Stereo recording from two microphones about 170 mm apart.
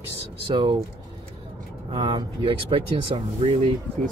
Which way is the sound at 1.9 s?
30° right (ahead or behind).